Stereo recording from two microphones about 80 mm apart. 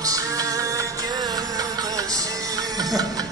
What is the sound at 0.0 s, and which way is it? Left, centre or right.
Music, right.